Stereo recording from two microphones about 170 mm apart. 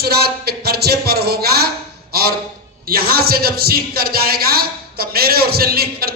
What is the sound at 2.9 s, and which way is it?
A man's voice, 60° right (ahead or behind).